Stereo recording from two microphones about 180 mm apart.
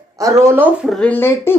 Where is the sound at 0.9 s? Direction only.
5° left (ahead or behind).